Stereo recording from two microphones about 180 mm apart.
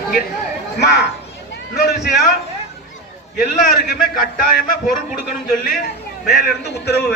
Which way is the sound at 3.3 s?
55° left (ahead or behind).